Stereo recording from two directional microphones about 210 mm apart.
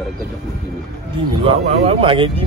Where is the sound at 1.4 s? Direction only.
30° right (ahead or behind).